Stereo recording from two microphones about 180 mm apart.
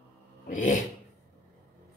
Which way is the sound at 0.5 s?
45° left (ahead or behind).